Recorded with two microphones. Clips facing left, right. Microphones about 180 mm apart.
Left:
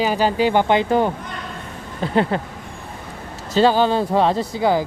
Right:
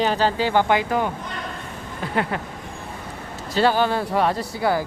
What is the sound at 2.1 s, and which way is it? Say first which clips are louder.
Speech: left 6 dB; 30° left (ahead or behind).